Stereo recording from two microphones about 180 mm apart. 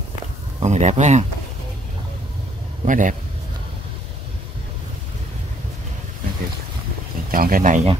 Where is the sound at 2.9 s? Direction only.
45° right (ahead or behind).